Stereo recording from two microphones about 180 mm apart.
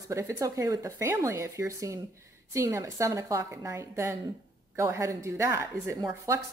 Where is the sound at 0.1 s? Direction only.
15° right (ahead or behind).